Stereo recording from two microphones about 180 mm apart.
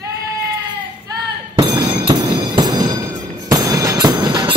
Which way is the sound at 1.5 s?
25° right (ahead or behind).